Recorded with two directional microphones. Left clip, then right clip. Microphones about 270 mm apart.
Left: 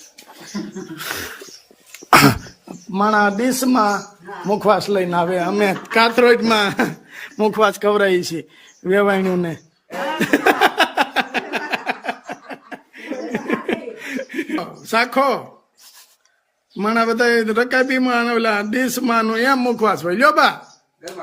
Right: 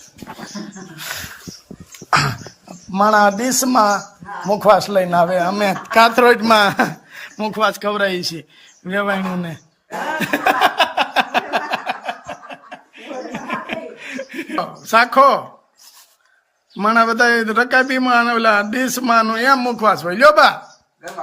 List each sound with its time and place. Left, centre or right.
0.9 s speech: centre
2.6 s a man's voice: centre
10.2 s a sound: centre
16.7 s speech: centre